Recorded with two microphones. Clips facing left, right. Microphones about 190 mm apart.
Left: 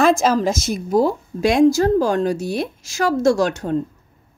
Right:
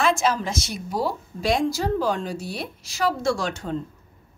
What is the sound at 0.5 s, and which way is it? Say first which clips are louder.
Speech: left 9 dB; 50° left (ahead or behind).